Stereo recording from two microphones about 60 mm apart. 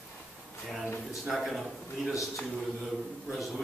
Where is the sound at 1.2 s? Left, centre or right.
Centre.